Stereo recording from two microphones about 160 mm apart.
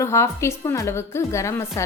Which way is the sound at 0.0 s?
15° left (ahead or behind).